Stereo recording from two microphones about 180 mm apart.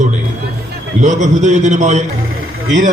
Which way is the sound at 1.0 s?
40° right (ahead or behind).